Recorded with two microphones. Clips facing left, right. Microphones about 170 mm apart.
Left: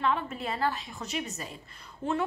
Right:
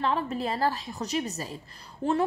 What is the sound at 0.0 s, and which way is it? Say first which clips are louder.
A woman's voice: right 2 dB; 35° right (ahead or behind).